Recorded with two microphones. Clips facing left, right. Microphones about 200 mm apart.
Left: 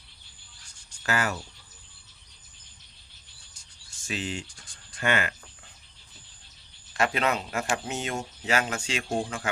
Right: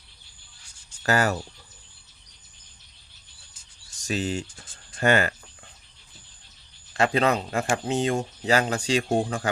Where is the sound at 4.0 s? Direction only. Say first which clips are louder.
Right 6 dB; 40° right (ahead or behind).